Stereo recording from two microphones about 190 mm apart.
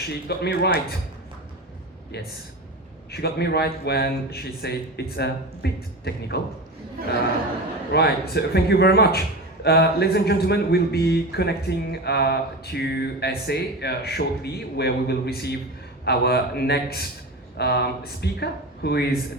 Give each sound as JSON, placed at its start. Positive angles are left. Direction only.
{"t": 0.1, "sound": "a man's voice", "side_deg": 60}
{"t": 2.1, "sound": "a man's voice", "side_deg": 60}
{"t": 7.0, "sound": "speech", "side_deg": -50}
{"t": 7.9, "sound": "a man's voice", "side_deg": 60}